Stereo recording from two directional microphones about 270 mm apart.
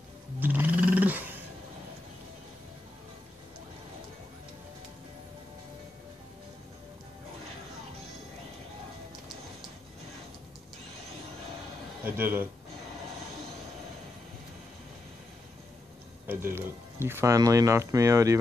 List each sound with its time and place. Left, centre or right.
0.4 s roar: centre
12.0 s a sound: centre
16.3 s speech: centre